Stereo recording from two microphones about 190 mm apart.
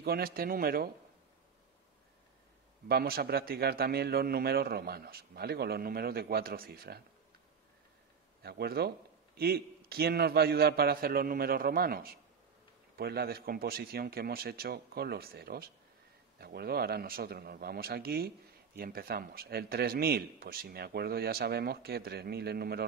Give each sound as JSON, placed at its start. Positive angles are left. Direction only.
{"t": 0.0, "sound": "a man's voice", "side_deg": -55}
{"t": 2.9, "sound": "a man's voice", "side_deg": -55}
{"t": 8.4, "sound": "a man's voice", "side_deg": -55}